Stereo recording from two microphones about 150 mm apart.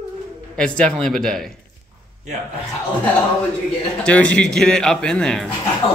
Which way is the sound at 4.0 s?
10° left (ahead or behind).